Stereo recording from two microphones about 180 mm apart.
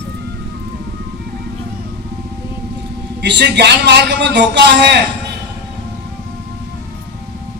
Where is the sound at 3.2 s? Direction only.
70° right (ahead or behind).